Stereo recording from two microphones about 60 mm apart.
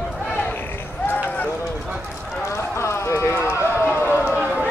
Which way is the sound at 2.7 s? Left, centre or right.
Left.